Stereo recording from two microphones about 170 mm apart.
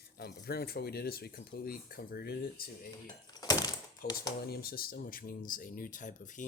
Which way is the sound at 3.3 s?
20° left (ahead or behind).